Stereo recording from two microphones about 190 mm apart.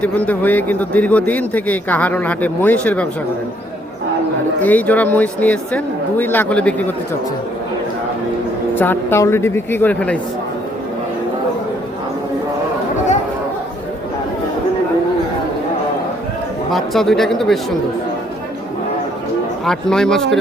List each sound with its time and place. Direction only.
0.0 s a man's voice: 10° left (ahead or behind)
4.6 s a man's voice: 10° left (ahead or behind)
8.7 s a man's voice: 10° left (ahead or behind)
16.7 s speech: centre (ahead or behind)
19.6 s speech: 5° left (ahead or behind)